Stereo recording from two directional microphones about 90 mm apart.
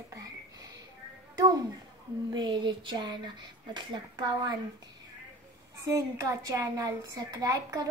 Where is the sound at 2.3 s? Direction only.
55° right (ahead or behind).